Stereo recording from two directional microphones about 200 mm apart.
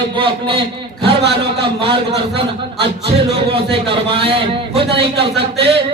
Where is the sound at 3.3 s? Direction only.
30° right (ahead or behind).